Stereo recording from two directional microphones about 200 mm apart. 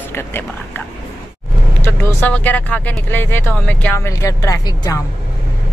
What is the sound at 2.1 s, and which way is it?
Speech, 10° left (ahead or behind).